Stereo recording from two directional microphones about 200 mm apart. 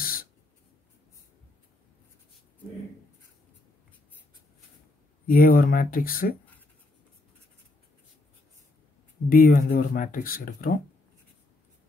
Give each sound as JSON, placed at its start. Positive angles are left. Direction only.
{"t": 0.0, "sound": "writing", "side_deg": 45}
{"t": 5.3, "sound": "speech", "side_deg": 45}
{"t": 9.3, "sound": "speech", "side_deg": 50}